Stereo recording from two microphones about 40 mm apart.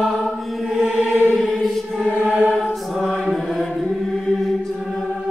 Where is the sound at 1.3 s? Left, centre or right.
Centre.